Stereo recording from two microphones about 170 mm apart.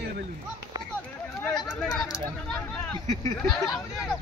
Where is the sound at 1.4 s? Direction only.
5° left (ahead or behind).